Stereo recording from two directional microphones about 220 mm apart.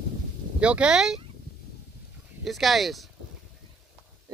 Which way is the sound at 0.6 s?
5° right (ahead or behind).